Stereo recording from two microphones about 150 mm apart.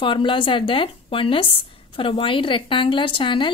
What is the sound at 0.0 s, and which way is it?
A woman's voice, 35° left (ahead or behind).